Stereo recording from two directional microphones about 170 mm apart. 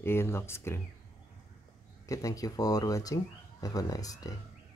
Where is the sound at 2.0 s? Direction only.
20° left (ahead or behind).